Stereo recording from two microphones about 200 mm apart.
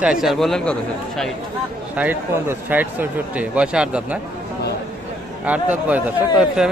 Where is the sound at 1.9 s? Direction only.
10° right (ahead or behind).